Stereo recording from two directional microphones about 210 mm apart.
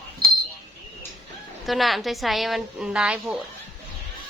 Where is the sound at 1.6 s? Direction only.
Centre (ahead or behind).